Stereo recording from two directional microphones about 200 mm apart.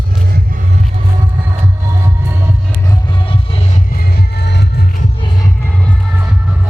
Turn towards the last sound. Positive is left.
turn(degrees=55)  # may be behind; listen again after turning